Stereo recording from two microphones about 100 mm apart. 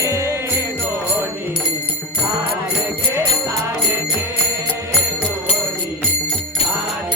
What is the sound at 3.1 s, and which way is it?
Music, 30° right (ahead or behind).